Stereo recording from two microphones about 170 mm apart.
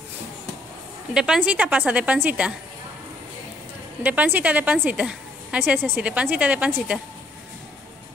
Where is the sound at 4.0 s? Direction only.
10° right (ahead or behind).